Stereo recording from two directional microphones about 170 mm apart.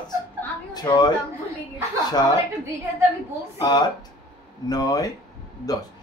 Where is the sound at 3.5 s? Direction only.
25° left (ahead or behind).